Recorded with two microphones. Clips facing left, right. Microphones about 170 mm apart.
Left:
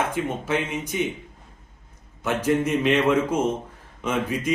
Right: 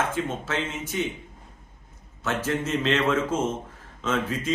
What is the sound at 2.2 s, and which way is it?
A man's voice, 15° left (ahead or behind).